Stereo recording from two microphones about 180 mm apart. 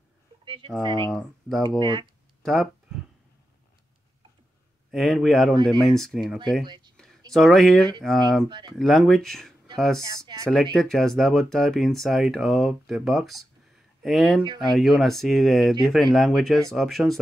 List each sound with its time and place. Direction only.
1.8 s speech: 25° right (ahead or behind)
2.4 s speech: centre (ahead or behind)
4.9 s speech: centre (ahead or behind)
6.6 s speech: 25° right (ahead or behind)
7.3 s speech: centre (ahead or behind)
8.5 s speech: 25° right (ahead or behind)
8.7 s speech: centre (ahead or behind)
10.0 s speech: 20° right (ahead or behind)
10.5 s speech: centre (ahead or behind)